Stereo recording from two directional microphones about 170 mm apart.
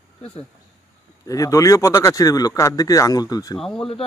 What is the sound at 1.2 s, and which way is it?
Speech, 20° left (ahead or behind).